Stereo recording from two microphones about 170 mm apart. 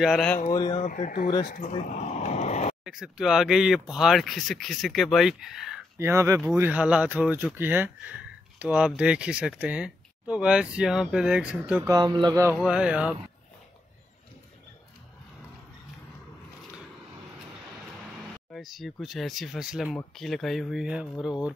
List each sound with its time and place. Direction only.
0.0 s speech: centre (ahead or behind)
0.5 s speech: 20° left (ahead or behind)
0.7 s speech: 45° left (ahead or behind)
1.7 s speech: 40° left (ahead or behind)
2.8 s speech: 5° right (ahead or behind)
5.9 s speech: 15° right (ahead or behind)
11.9 s speech: 25° right (ahead or behind)
12.6 s speech: 5° right (ahead or behind)
18.5 s speech: centre (ahead or behind)